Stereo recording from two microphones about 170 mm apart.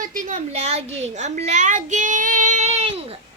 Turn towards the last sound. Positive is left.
turn(degrees=-35)  # may be behind; listen again after turning